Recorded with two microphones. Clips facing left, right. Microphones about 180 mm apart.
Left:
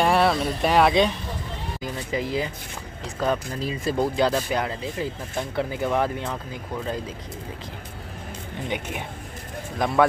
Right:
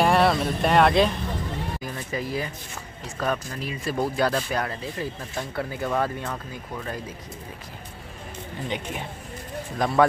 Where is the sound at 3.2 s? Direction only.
25° left (ahead or behind).